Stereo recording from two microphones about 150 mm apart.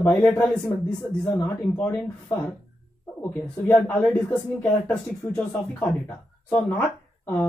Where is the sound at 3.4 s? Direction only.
10° left (ahead or behind).